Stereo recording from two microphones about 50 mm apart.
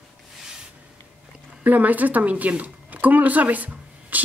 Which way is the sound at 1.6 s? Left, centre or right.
Right.